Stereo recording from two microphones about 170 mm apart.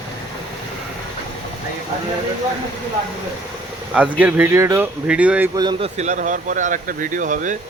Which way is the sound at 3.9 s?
10° right (ahead or behind).